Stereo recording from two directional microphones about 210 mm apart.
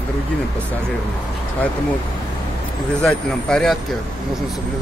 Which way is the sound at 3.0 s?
Centre (ahead or behind).